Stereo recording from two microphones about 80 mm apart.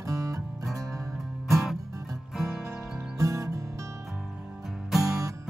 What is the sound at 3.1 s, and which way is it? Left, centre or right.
Music, right.